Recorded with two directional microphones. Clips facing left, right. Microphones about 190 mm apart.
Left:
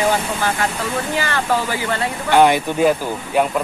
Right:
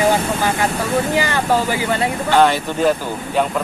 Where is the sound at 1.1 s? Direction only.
15° right (ahead or behind).